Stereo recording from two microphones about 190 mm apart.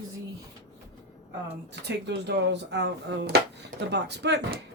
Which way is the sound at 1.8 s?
60° right (ahead or behind).